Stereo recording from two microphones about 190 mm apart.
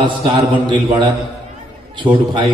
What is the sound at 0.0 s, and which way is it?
A man's voice, 25° right (ahead or behind).